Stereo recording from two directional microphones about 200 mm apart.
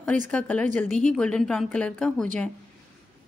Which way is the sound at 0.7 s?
35° right (ahead or behind).